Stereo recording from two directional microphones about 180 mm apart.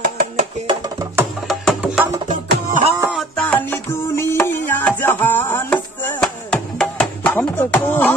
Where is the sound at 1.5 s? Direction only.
Centre (ahead or behind).